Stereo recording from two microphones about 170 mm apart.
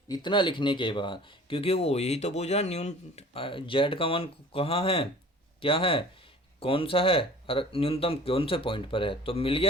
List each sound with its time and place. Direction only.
0.1 s speech: 25° left (ahead or behind)